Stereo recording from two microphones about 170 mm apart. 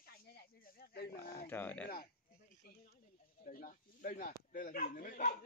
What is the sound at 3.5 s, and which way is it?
Speech, 55° left (ahead or behind).